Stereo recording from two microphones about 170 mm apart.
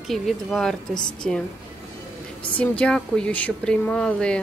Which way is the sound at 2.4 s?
10° left (ahead or behind).